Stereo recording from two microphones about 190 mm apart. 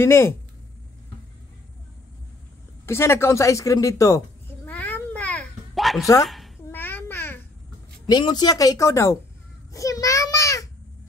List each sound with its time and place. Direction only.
0.0 s speech: 15° left (ahead or behind)
2.9 s speech: 15° left (ahead or behind)
4.6 s cat: 10° left (ahead or behind)
6.7 s babbling: 10° left (ahead or behind)
8.1 s a woman's voice: 20° left (ahead or behind)
9.7 s a sound: 15° left (ahead or behind)